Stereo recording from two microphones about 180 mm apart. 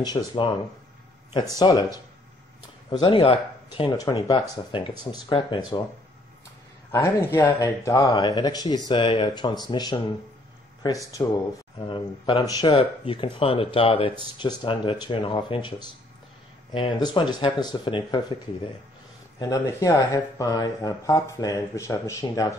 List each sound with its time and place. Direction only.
0.0 s speech: 25° left (ahead or behind)
1.6 s speech: 20° left (ahead or behind)
6.9 s speech: 15° left (ahead or behind)
12.4 s speech: 20° left (ahead or behind)
19.3 s speech: 15° left (ahead or behind)